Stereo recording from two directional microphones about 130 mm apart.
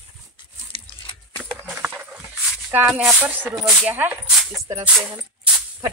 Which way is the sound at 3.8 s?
15° right (ahead or behind).